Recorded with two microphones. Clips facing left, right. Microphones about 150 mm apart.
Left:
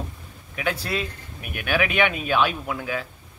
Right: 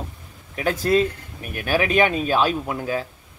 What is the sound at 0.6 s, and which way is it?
Speech, 45° right (ahead or behind).